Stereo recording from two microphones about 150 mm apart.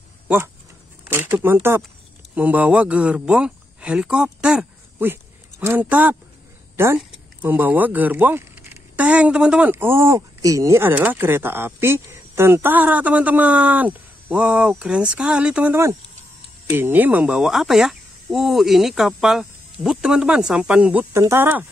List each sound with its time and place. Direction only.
1.0 s a man's voice: 15° right (ahead or behind)